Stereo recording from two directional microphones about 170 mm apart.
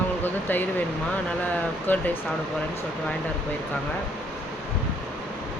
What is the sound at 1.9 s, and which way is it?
Speech, 10° left (ahead or behind).